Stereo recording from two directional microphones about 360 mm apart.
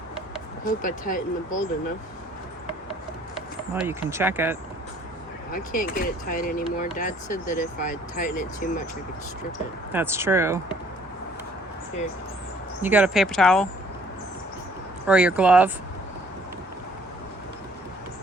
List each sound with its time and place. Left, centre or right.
0.6 s speech: left
3.3 s speech: centre
5.5 s speech: left
9.9 s speech: centre
12.8 s speech: centre
15.0 s speech: centre